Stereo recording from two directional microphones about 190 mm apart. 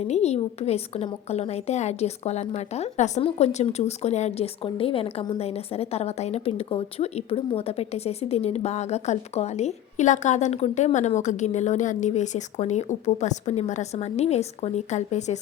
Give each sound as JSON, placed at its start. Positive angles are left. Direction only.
{"t": 0.0, "sound": "a woman's voice", "side_deg": 35}